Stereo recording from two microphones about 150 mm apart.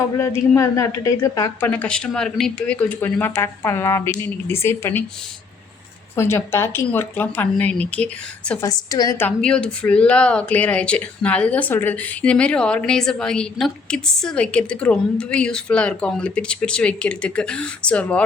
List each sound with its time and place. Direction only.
0.2 s speech: 20° left (ahead or behind)
6.1 s speech: 15° left (ahead or behind)
8.6 s a woman's voice: 25° left (ahead or behind)
9.2 s speech: 5° left (ahead or behind)